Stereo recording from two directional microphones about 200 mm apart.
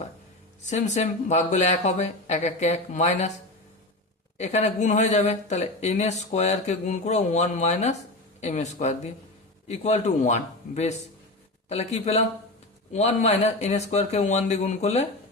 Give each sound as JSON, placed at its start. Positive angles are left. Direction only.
{"t": 0.6, "sound": "speech", "side_deg": 35}
{"t": 4.4, "sound": "speech", "side_deg": 35}